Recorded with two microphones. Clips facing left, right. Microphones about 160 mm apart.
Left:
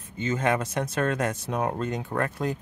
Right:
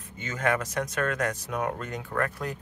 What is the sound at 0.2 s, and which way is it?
Speech, 25° left (ahead or behind).